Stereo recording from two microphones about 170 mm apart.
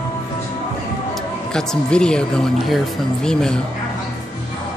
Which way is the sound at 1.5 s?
5° left (ahead or behind).